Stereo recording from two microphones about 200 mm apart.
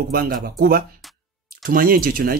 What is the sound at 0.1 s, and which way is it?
Speech, 45° right (ahead or behind).